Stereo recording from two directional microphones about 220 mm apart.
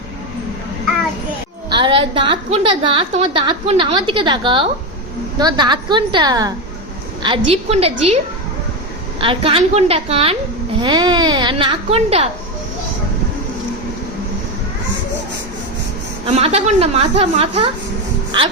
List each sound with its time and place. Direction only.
1.7 s a woman's voice: 20° right (ahead or behind)
9.2 s a woman's voice: 25° right (ahead or behind)
16.2 s a woman's voice: 30° right (ahead or behind)